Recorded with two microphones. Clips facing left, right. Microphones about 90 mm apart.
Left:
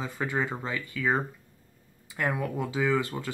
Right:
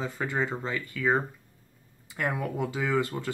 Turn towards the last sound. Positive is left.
turn(degrees=0)  # may be behind; listen again after turning